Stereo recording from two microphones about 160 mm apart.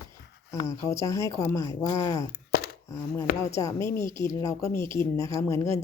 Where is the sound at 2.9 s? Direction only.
20° left (ahead or behind).